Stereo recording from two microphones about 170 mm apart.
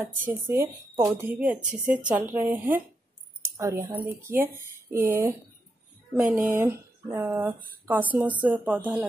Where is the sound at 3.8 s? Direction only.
10° right (ahead or behind).